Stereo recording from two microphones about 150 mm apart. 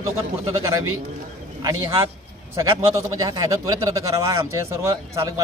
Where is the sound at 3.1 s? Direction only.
25° right (ahead or behind).